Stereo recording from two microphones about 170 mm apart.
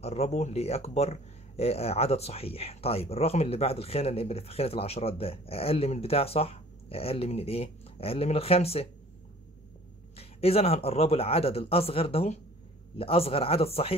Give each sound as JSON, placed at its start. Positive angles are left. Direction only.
{"t": 0.0, "sound": "speech", "side_deg": 40}
{"t": 10.1, "sound": "speech", "side_deg": 35}